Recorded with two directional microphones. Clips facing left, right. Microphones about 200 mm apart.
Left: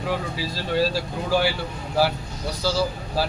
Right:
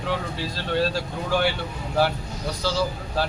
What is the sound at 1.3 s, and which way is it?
Speech, 5° left (ahead or behind).